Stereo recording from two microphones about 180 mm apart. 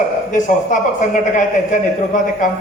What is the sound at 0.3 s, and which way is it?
A man's voice, 45° left (ahead or behind).